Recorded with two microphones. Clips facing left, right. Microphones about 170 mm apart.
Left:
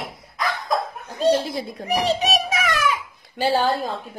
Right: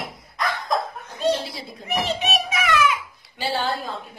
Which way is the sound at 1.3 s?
50° left (ahead or behind).